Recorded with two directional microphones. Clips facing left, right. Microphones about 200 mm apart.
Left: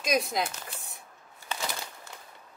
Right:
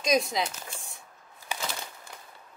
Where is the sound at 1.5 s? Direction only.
15° right (ahead or behind).